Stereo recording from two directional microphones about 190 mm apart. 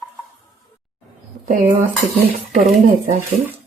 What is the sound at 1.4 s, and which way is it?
Speech, 40° right (ahead or behind).